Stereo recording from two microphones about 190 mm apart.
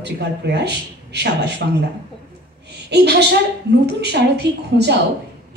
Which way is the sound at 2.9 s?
60° right (ahead or behind).